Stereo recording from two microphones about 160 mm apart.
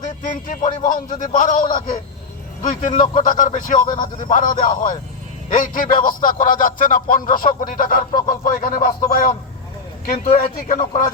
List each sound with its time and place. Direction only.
0.2 s speech: 55° left (ahead or behind)